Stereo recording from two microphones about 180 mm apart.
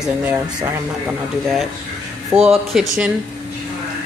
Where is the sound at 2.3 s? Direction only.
Centre (ahead or behind).